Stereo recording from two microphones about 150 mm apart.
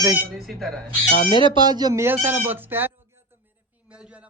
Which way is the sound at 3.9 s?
10° right (ahead or behind).